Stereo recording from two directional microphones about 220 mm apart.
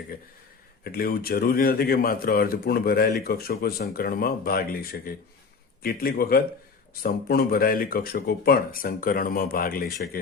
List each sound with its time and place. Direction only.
0.9 s speech: 45° left (ahead or behind)